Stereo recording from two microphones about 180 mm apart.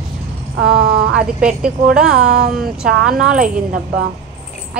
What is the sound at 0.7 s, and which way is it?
Speech, 60° right (ahead or behind).